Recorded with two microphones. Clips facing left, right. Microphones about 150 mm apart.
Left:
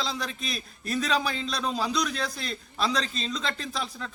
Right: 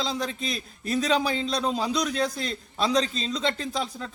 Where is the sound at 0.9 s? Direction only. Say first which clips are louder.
Right 3 dB; 30° right (ahead or behind).